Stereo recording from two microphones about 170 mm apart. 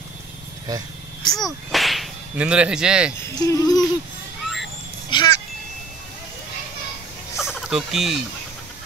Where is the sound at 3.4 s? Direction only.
20° left (ahead or behind).